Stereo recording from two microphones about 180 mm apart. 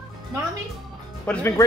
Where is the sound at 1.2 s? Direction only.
10° left (ahead or behind).